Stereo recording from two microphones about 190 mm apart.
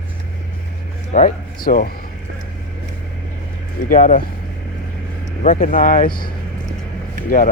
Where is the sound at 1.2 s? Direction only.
45° left (ahead or behind).